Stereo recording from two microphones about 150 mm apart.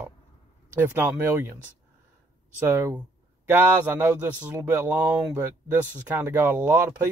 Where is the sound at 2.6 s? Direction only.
15° right (ahead or behind).